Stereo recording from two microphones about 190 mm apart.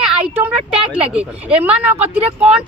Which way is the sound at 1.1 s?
5° right (ahead or behind).